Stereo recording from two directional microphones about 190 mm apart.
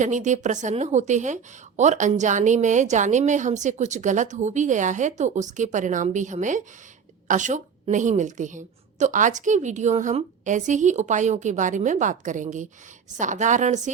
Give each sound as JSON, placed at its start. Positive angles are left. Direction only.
{"t": 0.0, "sound": "a woman's voice", "side_deg": -40}